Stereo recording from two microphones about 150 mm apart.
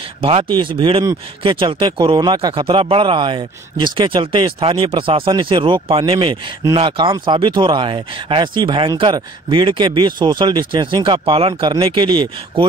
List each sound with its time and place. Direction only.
0.2 s speech: 35° right (ahead or behind)